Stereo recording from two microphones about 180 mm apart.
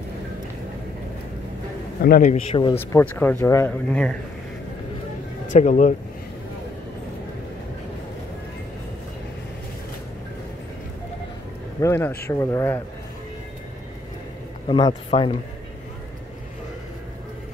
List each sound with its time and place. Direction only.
2.0 s a man's voice: 55° left (ahead or behind)
2.5 s speech: 30° left (ahead or behind)
2.9 s speech: 10° left (ahead or behind)
5.5 s a man's voice: 45° left (ahead or behind)
11.8 s speech: 15° left (ahead or behind)
14.7 s a man's voice: 25° left (ahead or behind)